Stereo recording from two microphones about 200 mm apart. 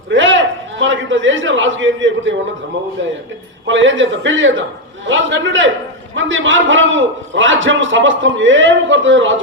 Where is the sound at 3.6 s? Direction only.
70° right (ahead or behind).